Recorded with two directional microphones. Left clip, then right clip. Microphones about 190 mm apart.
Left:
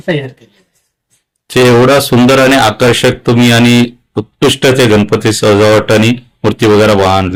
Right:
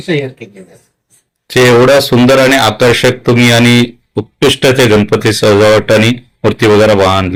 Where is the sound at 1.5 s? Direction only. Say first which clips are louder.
Right 1 dB; 15° left (ahead or behind).